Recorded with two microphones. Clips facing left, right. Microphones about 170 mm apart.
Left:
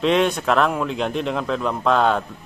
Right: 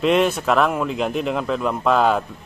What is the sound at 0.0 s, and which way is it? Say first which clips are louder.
A man's voice: right 1 dB; 5° right (ahead or behind).